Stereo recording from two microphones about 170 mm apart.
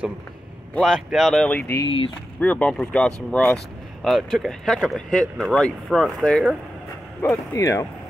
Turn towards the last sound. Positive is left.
turn(degrees=20)  # may be behind; listen again after turning